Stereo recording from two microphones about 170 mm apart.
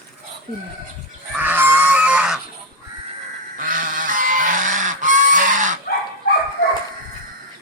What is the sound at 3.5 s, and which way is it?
Goose, 55° right (ahead or behind).